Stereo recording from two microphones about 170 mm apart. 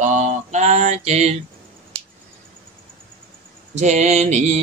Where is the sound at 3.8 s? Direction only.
40° right (ahead or behind).